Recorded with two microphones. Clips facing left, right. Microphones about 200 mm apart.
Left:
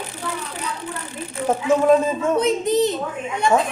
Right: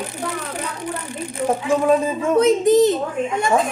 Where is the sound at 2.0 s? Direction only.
10° right (ahead or behind).